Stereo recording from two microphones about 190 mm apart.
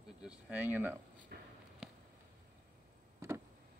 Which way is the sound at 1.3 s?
55° right (ahead or behind).